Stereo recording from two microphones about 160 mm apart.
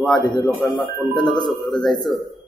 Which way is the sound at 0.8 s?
30° left (ahead or behind).